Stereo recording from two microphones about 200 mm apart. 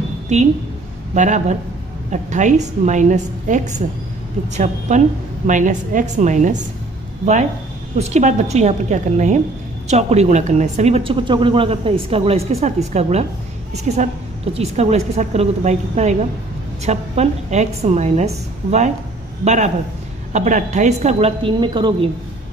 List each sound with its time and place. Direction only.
1.1 s a woman's voice: 35° right (ahead or behind)
8.0 s a woman's voice: 35° right (ahead or behind)